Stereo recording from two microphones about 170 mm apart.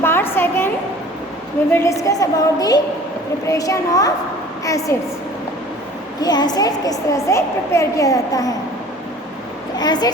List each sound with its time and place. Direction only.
0.0 s a sound: 15° left (ahead or behind)
1.7 s a woman's voice: 15° left (ahead or behind)
6.2 s a woman's voice: 25° left (ahead or behind)
9.7 s a woman's voice: 25° left (ahead or behind)